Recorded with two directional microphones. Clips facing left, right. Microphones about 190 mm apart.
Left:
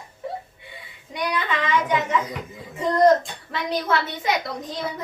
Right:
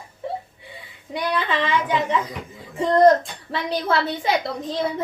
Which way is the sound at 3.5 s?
30° right (ahead or behind).